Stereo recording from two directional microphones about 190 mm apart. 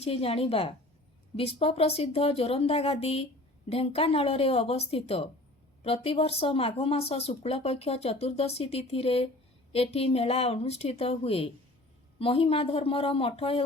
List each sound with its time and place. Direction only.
0.0 s speech: 30° left (ahead or behind)